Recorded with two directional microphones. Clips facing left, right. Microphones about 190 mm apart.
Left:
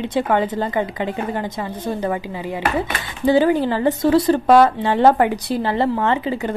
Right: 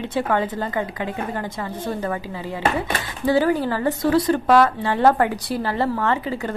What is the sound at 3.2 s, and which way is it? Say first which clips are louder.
A woman's voice: left 3 dB; 20° left (ahead or behind).